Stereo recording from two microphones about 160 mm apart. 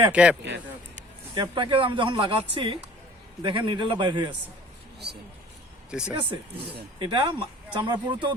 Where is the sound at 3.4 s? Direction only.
30° right (ahead or behind).